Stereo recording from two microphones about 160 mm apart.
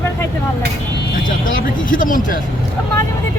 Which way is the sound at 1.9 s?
55° left (ahead or behind).